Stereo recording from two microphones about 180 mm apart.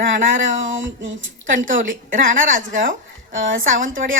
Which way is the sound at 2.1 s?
50° right (ahead or behind).